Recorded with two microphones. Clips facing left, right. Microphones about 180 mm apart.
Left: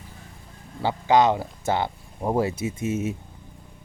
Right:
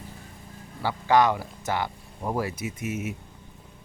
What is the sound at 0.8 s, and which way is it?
Speech, 20° left (ahead or behind).